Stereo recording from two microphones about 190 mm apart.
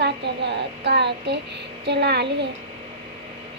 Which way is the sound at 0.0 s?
65° right (ahead or behind).